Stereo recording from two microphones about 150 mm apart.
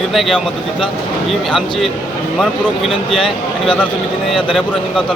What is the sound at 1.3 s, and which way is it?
Speech, centre (ahead or behind).